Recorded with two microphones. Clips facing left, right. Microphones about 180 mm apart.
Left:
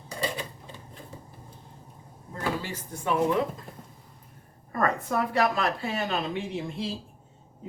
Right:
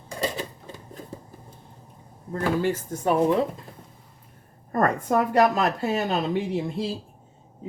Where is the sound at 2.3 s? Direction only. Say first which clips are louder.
Right 8 dB; 55° right (ahead or behind).